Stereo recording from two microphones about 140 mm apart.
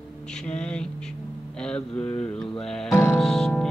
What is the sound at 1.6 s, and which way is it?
Music, 5° left (ahead or behind).